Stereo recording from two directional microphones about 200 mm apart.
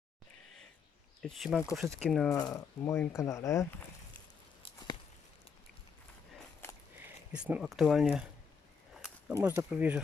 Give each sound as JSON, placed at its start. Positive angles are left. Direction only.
{"t": 1.2, "sound": "speech", "side_deg": 0}
{"t": 2.3, "sound": "speech", "side_deg": 15}
{"t": 4.6, "sound": "a sound", "side_deg": 20}
{"t": 6.6, "sound": "walk", "side_deg": 10}
{"t": 7.3, "sound": "speech", "side_deg": -5}
{"t": 9.3, "sound": "speech", "side_deg": -10}